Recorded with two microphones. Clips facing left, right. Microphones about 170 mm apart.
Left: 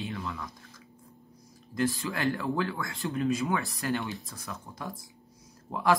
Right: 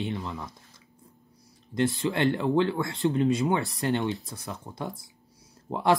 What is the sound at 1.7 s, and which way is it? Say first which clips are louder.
Speech: right 4 dB; 20° right (ahead or behind).